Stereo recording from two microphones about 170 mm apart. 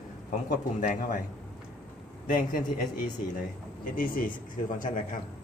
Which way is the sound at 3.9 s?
55° left (ahead or behind).